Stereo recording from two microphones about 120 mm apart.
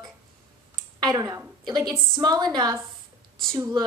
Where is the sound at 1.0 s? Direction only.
30° right (ahead or behind).